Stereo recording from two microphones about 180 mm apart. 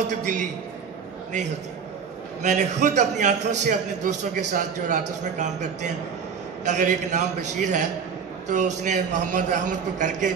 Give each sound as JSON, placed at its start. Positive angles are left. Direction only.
{"t": 0.1, "sound": "a man's voice", "side_deg": -45}
{"t": 2.4, "sound": "a man's voice", "side_deg": -40}